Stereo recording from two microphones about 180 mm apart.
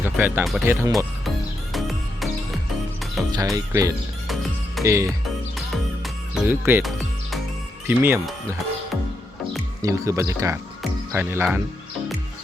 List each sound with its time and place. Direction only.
0.0 s speech: 10° right (ahead or behind)
1.7 s music: centre (ahead or behind)
3.3 s speech: 20° right (ahead or behind)
6.3 s speech: 10° right (ahead or behind)
7.9 s speech: 10° right (ahead or behind)
9.8 s speech: 15° right (ahead or behind)